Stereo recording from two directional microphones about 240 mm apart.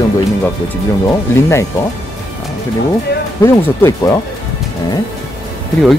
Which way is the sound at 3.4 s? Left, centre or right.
Centre.